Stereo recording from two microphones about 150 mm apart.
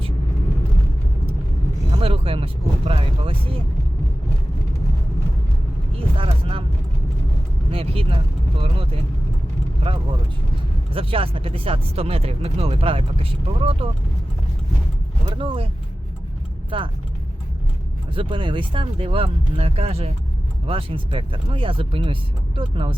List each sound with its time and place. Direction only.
1.9 s vehicle: 40° right (ahead or behind)
6.1 s vehicle: 35° right (ahead or behind)
7.7 s vehicle: 40° right (ahead or behind)
10.9 s speech: 35° right (ahead or behind)
15.4 s speech: 35° right (ahead or behind)
16.7 s speech: 35° right (ahead or behind)
18.1 s speech: 35° right (ahead or behind)